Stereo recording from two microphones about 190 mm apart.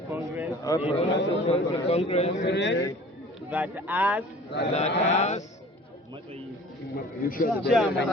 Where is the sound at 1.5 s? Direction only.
30° left (ahead or behind).